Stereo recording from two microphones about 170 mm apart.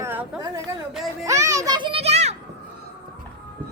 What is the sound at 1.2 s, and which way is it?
Children playing, 20° right (ahead or behind).